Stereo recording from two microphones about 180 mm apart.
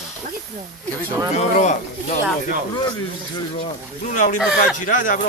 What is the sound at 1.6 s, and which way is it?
Speech, 40° left (ahead or behind).